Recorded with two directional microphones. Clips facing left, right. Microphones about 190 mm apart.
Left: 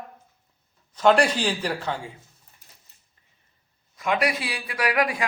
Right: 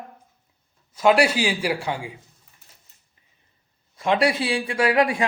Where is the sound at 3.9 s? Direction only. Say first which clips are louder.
Right 4 dB; 30° right (ahead or behind).